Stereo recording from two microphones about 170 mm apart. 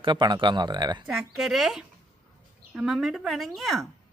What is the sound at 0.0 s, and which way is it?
Speech, 25° right (ahead or behind).